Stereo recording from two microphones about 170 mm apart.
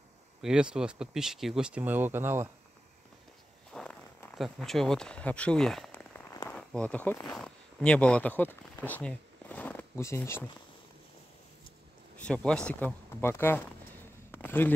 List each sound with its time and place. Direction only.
0.4 s speech: 5° right (ahead or behind)
3.7 s speech: 5° left (ahead or behind)
5.9 s rain on surface: 20° left (ahead or behind)
6.5 s speech: 5° left (ahead or behind)
12.3 s speech: 5° left (ahead or behind)
14.3 s a sound: 10° left (ahead or behind)